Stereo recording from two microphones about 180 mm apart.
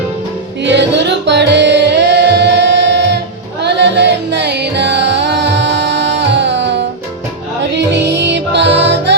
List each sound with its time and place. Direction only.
0.6 s music: 80° right